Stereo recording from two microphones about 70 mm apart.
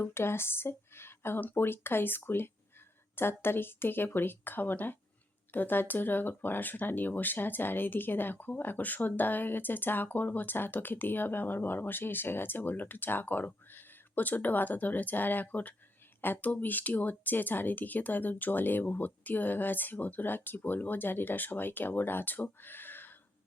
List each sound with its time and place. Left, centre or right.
0.0 s speech: left